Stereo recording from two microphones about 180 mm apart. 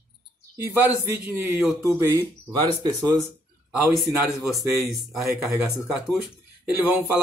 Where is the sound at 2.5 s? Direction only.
25° right (ahead or behind).